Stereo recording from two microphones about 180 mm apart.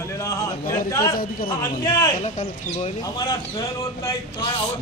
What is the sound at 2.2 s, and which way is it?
Speech, 35° left (ahead or behind).